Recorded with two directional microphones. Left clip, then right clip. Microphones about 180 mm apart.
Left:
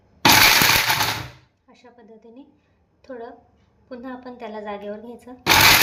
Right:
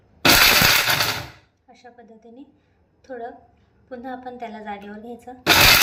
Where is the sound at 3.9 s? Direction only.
55° left (ahead or behind).